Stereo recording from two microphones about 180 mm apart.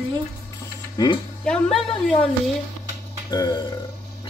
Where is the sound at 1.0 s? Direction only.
25° left (ahead or behind).